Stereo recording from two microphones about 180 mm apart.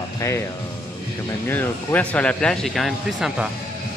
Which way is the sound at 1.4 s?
10° left (ahead or behind).